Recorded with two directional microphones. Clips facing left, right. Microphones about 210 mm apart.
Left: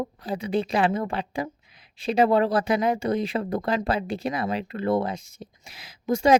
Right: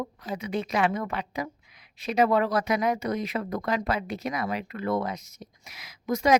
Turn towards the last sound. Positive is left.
turn(degrees=30)  # may be behind; listen again after turning